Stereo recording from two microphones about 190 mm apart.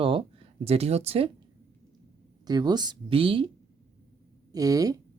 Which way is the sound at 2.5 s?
20° right (ahead or behind).